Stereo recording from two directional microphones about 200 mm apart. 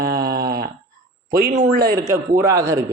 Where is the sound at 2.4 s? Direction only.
15° right (ahead or behind).